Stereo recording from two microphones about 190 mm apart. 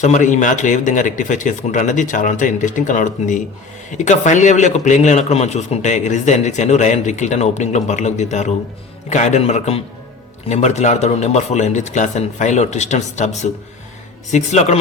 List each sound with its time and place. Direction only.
0.0 s a man's voice: 40° left (ahead or behind)